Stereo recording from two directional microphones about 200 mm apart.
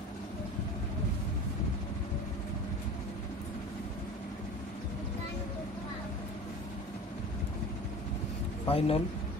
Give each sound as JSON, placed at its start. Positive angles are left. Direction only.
{"t": 8.6, "sound": "speech", "side_deg": 30}